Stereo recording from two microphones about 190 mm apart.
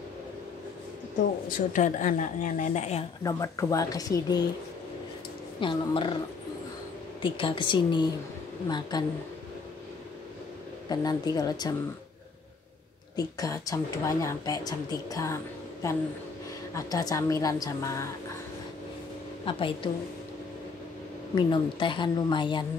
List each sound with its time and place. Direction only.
1.5 s a woman's voice: 40° left (ahead or behind)
3.3 s a woman's voice: 15° left (ahead or behind)
5.6 s a woman's voice: 25° left (ahead or behind)
7.2 s a woman's voice: 25° left (ahead or behind)
10.9 s a woman's voice: 20° left (ahead or behind)
13.1 s a woman's voice: 20° left (ahead or behind)
16.7 s a woman's voice: 20° left (ahead or behind)
19.4 s a woman's voice: 25° left (ahead or behind)
21.4 s a woman's voice: 25° left (ahead or behind)